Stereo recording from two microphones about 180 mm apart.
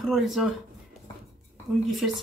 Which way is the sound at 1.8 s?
Centre (ahead or behind).